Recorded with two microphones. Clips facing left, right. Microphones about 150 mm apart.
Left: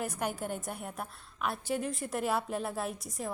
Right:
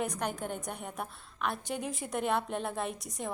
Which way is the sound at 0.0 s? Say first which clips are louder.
Right 1 dB; 5° left (ahead or behind).